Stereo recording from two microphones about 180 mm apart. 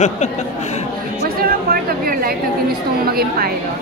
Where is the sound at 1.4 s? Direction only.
55° right (ahead or behind).